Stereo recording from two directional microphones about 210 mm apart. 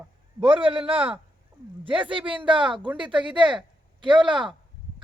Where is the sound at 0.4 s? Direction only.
25° right (ahead or behind).